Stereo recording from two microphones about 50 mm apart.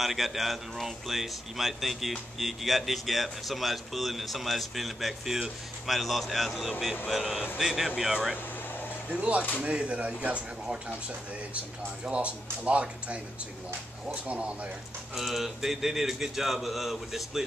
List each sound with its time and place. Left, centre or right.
0.0 s a man's voice: centre
9.2 s speech: right
11.5 s speech: right
15.1 s speech: centre